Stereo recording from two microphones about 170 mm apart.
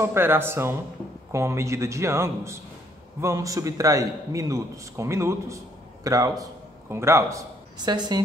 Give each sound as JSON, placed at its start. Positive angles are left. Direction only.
{"t": 0.0, "sound": "a man's voice", "side_deg": -15}